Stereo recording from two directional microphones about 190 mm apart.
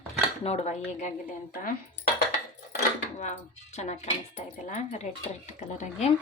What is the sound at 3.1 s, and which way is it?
Speech, 35° left (ahead or behind).